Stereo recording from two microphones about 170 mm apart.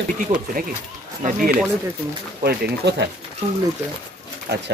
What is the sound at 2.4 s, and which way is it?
Speech, 75° right (ahead or behind).